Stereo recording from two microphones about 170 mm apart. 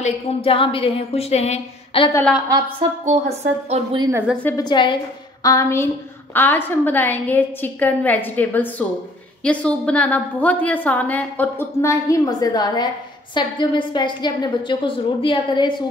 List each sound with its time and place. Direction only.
0.0 s a woman's voice: 35° left (ahead or behind)
3.1 s a woman's voice: 40° right (ahead or behind)
4.4 s a woman's voice: 10° left (ahead or behind)
4.6 s a woman's voice: 25° left (ahead or behind)